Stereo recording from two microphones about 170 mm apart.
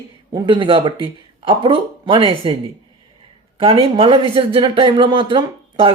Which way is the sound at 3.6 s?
30° right (ahead or behind).